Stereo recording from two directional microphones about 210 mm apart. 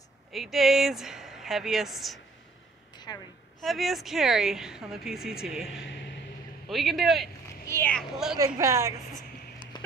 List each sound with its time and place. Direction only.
0.3 s speech: centre (ahead or behind)
3.6 s speech: centre (ahead or behind)
6.7 s speech: centre (ahead or behind)
7.6 s speech: 10° left (ahead or behind)
8.5 s a woman's voice: 15° right (ahead or behind)
9.7 s a sound: 20° left (ahead or behind)